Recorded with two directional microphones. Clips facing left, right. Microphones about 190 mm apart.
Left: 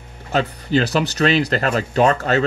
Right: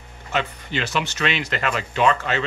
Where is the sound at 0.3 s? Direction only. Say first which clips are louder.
Left 7 dB; 35° left (ahead or behind).